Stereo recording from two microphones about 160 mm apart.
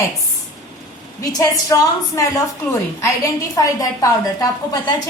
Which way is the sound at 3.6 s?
20° left (ahead or behind).